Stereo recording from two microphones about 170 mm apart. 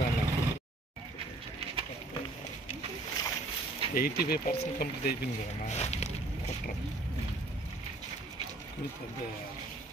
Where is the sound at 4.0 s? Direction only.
65° left (ahead or behind).